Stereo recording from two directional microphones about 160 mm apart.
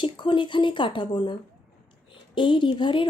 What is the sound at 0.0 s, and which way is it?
A woman's voice, 30° left (ahead or behind).